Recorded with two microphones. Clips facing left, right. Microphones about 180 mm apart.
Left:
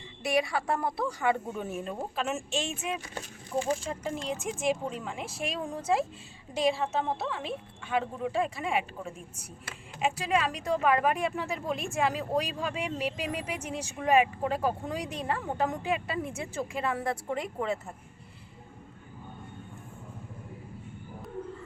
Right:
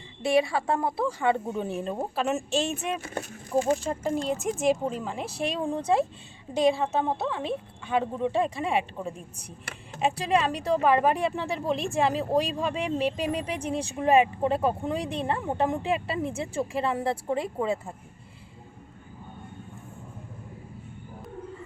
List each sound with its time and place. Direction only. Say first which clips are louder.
0.2 s speech: right 5 dB; 30° right (ahead or behind)